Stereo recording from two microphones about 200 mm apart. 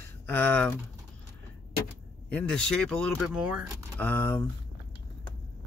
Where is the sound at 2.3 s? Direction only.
5° left (ahead or behind).